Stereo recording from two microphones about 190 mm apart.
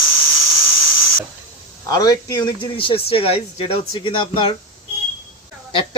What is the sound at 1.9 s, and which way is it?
Speech, 20° left (ahead or behind).